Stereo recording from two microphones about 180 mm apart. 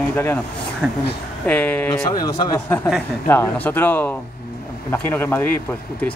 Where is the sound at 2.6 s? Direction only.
Centre (ahead or behind).